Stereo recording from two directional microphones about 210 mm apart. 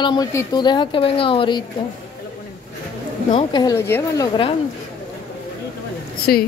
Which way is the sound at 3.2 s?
20° left (ahead or behind).